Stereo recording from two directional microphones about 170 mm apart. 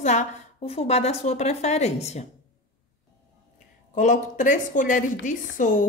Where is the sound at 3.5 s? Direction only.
45° left (ahead or behind).